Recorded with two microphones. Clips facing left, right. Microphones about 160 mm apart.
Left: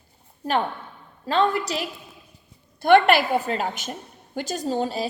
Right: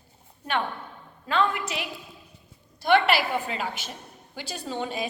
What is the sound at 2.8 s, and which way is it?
A woman's voice, 50° left (ahead or behind).